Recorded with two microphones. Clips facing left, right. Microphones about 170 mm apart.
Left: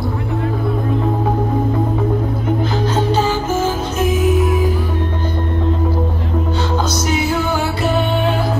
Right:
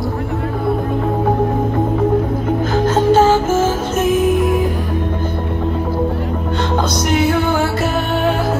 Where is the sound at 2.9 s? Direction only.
50° right (ahead or behind).